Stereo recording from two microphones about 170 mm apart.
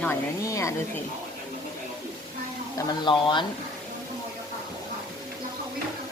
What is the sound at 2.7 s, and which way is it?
Speech, 25° left (ahead or behind).